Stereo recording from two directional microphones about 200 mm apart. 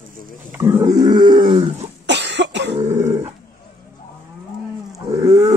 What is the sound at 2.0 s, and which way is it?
Cough, 60° right (ahead or behind).